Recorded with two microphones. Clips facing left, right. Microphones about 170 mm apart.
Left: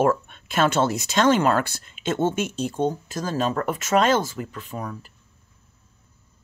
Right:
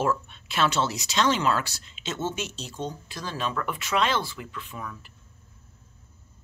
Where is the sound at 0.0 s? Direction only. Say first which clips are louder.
Left 6 dB; 50° left (ahead or behind).